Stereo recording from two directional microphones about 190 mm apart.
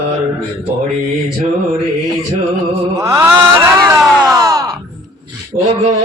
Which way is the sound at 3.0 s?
10° right (ahead or behind).